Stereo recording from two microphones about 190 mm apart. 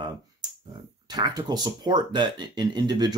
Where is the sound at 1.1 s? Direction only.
20° right (ahead or behind).